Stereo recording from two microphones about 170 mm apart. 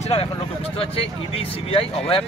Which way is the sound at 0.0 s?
35° left (ahead or behind).